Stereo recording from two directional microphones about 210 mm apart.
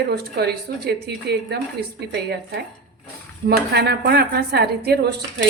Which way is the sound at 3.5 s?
50° right (ahead or behind).